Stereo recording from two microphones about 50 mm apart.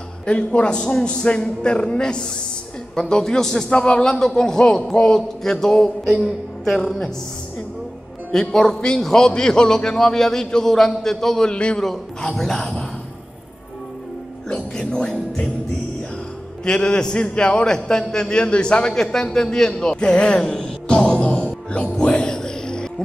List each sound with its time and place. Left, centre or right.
0.3 s a man's voice: left; by 7.1 s centre
8.3 s a man's voice: centre
11.8 s a man's voice: centre
14.8 s a man's voice: centre
16.6 s a man's voice: centre
20.5 s music: centre